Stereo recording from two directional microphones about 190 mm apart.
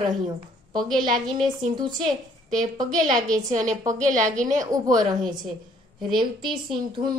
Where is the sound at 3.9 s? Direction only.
40° right (ahead or behind).